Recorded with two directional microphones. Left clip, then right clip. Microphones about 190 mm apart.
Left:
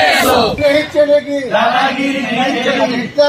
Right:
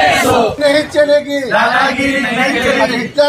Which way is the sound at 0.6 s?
Centre (ahead or behind).